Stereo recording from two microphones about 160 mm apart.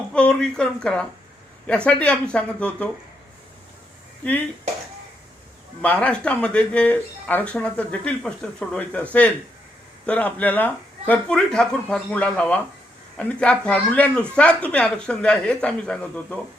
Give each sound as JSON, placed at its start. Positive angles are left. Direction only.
{"t": 0.1, "sound": "speech", "side_deg": 5}
{"t": 4.2, "sound": "speech", "side_deg": 10}
{"t": 5.8, "sound": "speech", "side_deg": 10}
{"t": 10.1, "sound": "speech", "side_deg": 10}